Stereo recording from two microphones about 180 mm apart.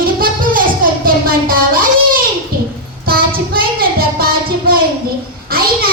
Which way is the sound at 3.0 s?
55° right (ahead or behind).